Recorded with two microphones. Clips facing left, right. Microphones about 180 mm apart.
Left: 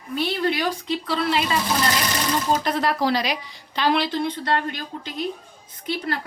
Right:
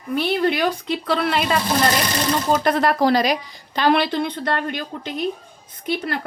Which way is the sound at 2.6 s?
55° right (ahead or behind).